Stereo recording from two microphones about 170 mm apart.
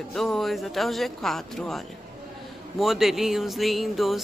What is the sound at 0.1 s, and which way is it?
Speech, centre (ahead or behind).